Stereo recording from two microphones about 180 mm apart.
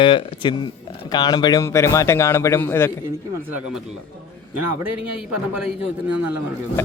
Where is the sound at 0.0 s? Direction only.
25° left (ahead or behind); by 2.9 s 10° left (ahead or behind).